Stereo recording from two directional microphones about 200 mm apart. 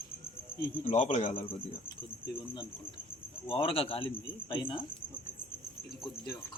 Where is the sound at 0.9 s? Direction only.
35° left (ahead or behind).